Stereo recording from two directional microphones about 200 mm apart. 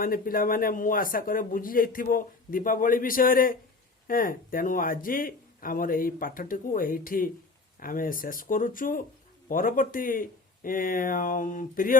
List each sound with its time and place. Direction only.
0.0 s speech: 45° left (ahead or behind)